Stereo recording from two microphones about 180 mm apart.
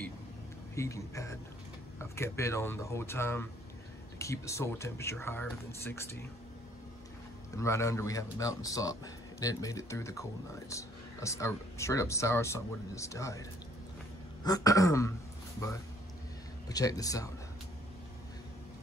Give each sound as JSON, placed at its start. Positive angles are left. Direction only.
{"t": 0.7, "sound": "speech", "side_deg": 15}
{"t": 7.5, "sound": "speech", "side_deg": 15}
{"t": 16.6, "sound": "speech", "side_deg": 20}